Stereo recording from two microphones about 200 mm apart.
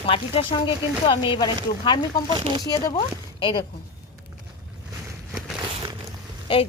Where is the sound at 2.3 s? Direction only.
25° right (ahead or behind).